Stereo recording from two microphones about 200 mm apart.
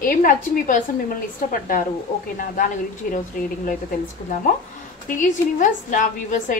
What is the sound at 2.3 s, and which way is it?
Speech, 45° left (ahead or behind).